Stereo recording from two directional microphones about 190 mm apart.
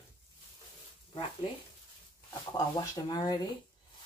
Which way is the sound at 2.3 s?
20° left (ahead or behind).